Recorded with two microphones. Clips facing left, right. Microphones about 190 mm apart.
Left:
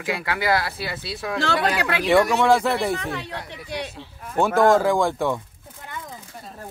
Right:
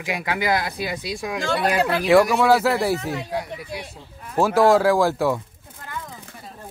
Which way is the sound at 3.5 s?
80° left.